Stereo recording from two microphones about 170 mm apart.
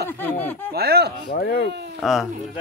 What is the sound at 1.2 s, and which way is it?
Speech, 60° left (ahead or behind).